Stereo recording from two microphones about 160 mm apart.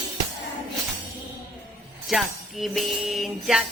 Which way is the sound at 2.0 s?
Centre (ahead or behind).